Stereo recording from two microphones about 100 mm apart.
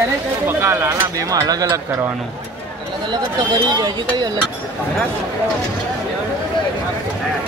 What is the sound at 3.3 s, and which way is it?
Speech, 45° right (ahead or behind).